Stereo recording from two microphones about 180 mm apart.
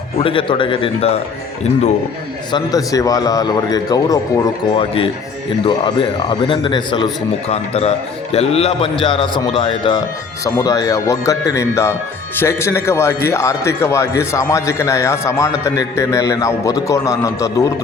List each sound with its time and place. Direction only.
0.2 s a man's voice: 30° left (ahead or behind)
2.5 s a man's voice: 20° left (ahead or behind)